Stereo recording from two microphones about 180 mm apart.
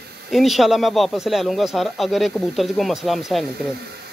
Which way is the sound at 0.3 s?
Centre (ahead or behind).